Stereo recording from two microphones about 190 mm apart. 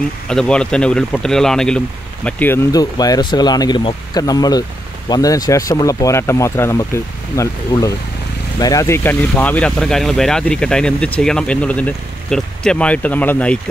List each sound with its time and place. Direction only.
0.3 s speech: 5° left (ahead or behind)